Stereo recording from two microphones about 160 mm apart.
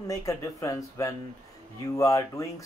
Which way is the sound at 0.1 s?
20° left (ahead or behind).